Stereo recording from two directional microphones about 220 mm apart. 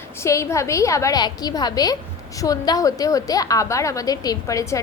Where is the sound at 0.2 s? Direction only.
15° left (ahead or behind).